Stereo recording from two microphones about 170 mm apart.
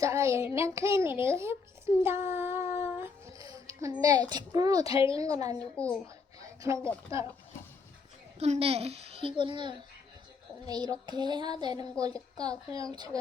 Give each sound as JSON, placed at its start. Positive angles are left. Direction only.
{"t": 0.0, "sound": "a child's voice", "side_deg": -15}
{"t": 2.0, "sound": "a sound", "side_deg": -15}
{"t": 4.0, "sound": "speech", "side_deg": -20}
{"t": 4.9, "sound": "a woman's voice", "side_deg": 35}
{"t": 5.1, "sound": "speech", "side_deg": -20}
{"t": 5.7, "sound": "a woman's voice", "side_deg": 10}
{"t": 7.1, "sound": "a child's voice", "side_deg": -15}
{"t": 8.4, "sound": "a child's voice", "side_deg": -35}